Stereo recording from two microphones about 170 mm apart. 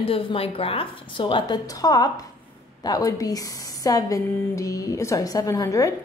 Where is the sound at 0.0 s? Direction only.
35° left (ahead or behind).